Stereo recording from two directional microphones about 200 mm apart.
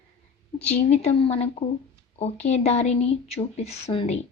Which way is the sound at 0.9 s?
30° left (ahead or behind).